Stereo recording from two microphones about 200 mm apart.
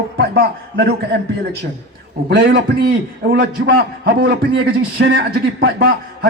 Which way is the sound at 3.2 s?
60° right (ahead or behind).